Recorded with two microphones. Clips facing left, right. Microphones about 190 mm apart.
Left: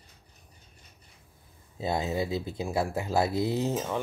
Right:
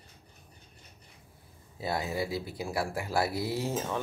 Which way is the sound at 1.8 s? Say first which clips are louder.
Left 3 dB; 20° left (ahead or behind).